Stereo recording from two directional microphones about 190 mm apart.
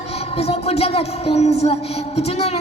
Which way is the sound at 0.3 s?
30° left (ahead or behind).